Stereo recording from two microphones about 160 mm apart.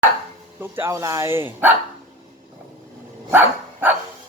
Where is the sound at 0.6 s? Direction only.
15° right (ahead or behind).